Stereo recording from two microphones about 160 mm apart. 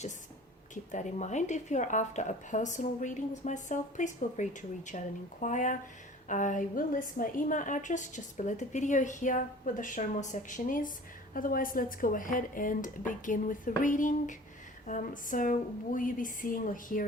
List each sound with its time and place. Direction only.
0.7 s a woman's voice: 50° left (ahead or behind)